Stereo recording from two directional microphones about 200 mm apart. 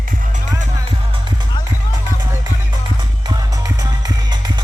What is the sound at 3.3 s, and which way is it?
Music, 20° right (ahead or behind).